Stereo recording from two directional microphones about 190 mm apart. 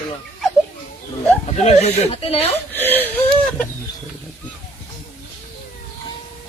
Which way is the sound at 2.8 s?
10° left (ahead or behind).